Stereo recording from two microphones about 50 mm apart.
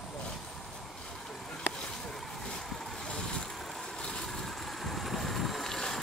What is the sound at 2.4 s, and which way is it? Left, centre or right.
Vehicle, centre.